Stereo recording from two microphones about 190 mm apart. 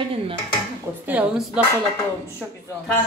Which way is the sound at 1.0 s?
5° right (ahead or behind).